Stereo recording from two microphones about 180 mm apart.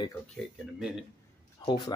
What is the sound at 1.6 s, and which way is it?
Speech, 25° left (ahead or behind).